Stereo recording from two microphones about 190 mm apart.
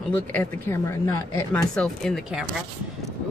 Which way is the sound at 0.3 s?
10° left (ahead or behind).